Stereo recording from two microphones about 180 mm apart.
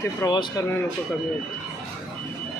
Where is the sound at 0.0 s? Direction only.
20° left (ahead or behind).